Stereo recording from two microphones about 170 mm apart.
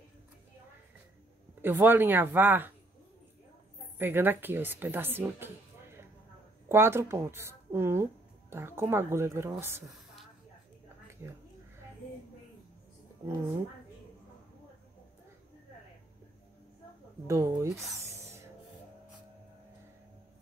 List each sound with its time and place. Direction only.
1.6 s speech: 10° right (ahead or behind)
4.0 s speech: 10° right (ahead or behind)
17.3 s speech: 20° right (ahead or behind)